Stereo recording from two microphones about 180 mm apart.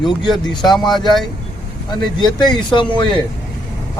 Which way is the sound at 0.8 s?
Centre (ahead or behind).